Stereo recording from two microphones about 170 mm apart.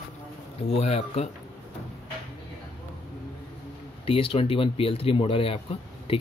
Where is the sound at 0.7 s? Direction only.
35° left (ahead or behind).